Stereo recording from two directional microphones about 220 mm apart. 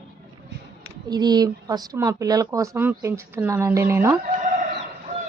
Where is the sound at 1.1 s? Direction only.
20° right (ahead or behind).